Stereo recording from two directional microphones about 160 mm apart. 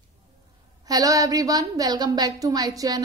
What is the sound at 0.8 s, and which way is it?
A woman's voice, 20° right (ahead or behind).